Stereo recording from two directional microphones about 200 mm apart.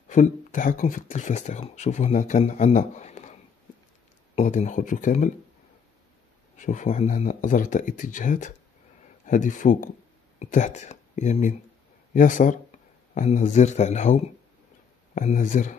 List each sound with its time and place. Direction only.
0.1 s speech: 40° left (ahead or behind)
4.4 s speech: 35° left (ahead or behind)
6.5 s speech: 40° left (ahead or behind)